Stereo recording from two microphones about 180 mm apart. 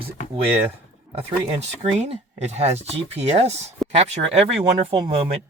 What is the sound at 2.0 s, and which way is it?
Speech, 35° right (ahead or behind).